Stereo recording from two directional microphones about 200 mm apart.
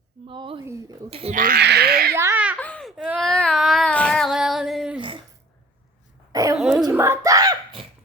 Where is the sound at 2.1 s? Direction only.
10° right (ahead or behind).